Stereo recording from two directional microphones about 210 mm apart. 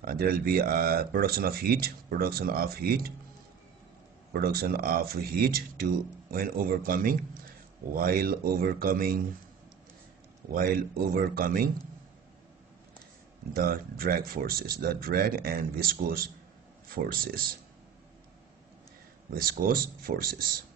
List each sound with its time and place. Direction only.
0.0 s speech: 45° right (ahead or behind)
4.3 s speech: 45° right (ahead or behind)
10.5 s speech: 45° right (ahead or behind)
13.6 s speech: 45° right (ahead or behind)
19.3 s speech: 45° right (ahead or behind)